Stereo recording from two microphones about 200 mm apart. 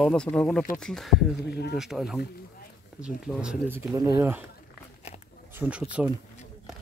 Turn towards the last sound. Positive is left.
turn(degrees=-5)  # may be behind; listen again after turning